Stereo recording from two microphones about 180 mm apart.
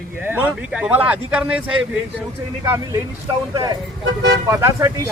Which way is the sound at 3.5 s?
20° right (ahead or behind).